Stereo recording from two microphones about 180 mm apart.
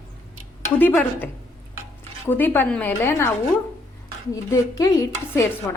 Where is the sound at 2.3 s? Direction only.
10° left (ahead or behind).